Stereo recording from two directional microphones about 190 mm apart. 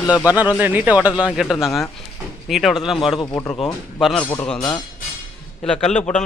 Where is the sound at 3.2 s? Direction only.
15° left (ahead or behind).